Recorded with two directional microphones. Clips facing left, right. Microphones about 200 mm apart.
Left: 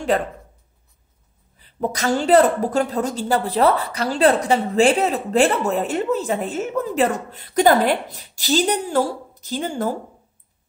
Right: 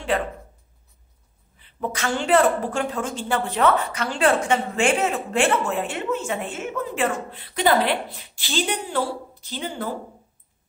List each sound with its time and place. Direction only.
0.1 s a woman's voice: 40° left (ahead or behind)
1.6 s a woman's voice: 40° left (ahead or behind)